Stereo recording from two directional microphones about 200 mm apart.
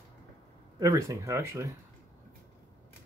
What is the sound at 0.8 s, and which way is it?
Speech, 15° right (ahead or behind).